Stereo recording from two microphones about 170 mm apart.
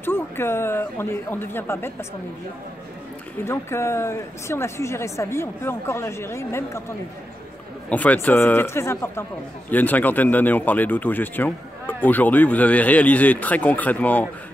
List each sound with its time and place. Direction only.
0.0 s speech: 15° left (ahead or behind)
3.4 s speech: 15° left (ahead or behind)
7.9 s speech: 10° left (ahead or behind)